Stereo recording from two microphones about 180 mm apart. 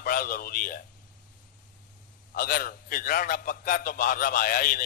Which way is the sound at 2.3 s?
55° left (ahead or behind).